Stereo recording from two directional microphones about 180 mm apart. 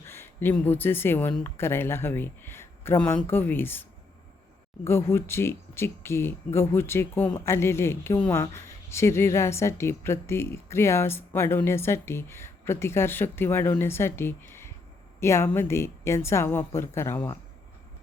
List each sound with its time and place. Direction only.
0.1 s speech: 15° left (ahead or behind)